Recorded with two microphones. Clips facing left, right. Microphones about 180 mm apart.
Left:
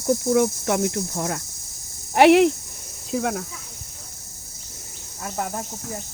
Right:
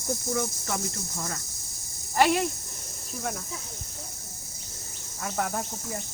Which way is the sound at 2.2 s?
75° left (ahead or behind).